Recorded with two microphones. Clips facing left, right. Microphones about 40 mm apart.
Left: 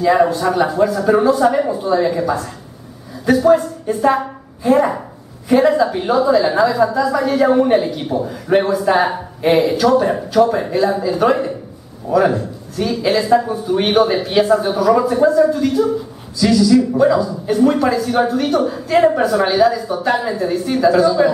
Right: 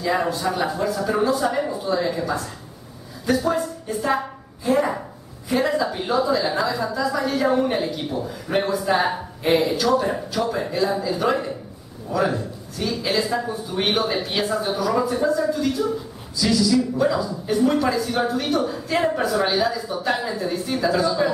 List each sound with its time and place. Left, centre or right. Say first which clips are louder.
0.0 s a woman's voice: left 8 dB; centre
12.4 s speech: left 6 dB; centre